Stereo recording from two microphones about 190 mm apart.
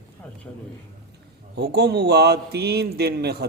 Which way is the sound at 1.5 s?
60° right (ahead or behind).